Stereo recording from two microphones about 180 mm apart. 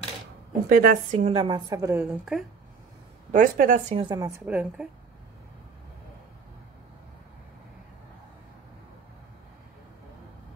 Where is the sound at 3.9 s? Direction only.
25° right (ahead or behind); by 4.8 s 10° right (ahead or behind).